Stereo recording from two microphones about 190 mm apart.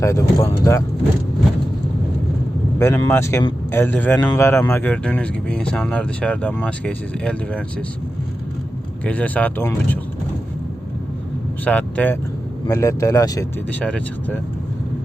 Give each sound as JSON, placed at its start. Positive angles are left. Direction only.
{"t": 0.0, "sound": "speech", "side_deg": 15}
{"t": 2.7, "sound": "speech", "side_deg": 15}
{"t": 9.0, "sound": "speech", "side_deg": 10}
{"t": 11.6, "sound": "speech", "side_deg": 5}
{"t": 13.7, "sound": "speech", "side_deg": 5}